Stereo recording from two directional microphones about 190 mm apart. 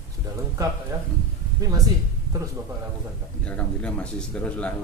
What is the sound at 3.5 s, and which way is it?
A man's voice, 5° left (ahead or behind).